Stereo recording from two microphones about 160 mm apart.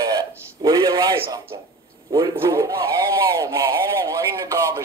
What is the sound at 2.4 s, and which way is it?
Speech, 20° right (ahead or behind).